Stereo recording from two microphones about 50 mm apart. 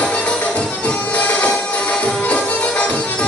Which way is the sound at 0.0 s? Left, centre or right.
Left.